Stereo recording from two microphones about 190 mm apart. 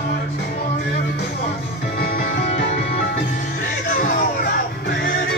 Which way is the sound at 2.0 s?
50° left (ahead or behind).